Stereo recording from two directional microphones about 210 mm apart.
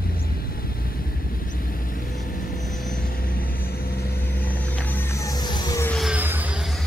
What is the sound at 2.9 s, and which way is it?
Vehicle, 45° left (ahead or behind).